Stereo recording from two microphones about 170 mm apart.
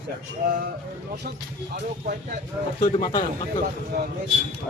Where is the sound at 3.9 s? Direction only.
65° right (ahead or behind).